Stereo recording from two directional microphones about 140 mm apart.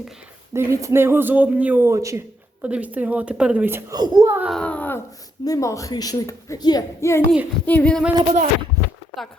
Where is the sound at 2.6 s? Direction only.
10° right (ahead or behind).